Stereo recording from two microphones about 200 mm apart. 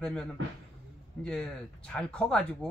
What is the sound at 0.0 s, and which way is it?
Speech, 5° left (ahead or behind).